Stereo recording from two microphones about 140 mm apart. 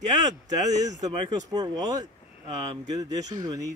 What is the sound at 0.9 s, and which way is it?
Speech, 30° right (ahead or behind).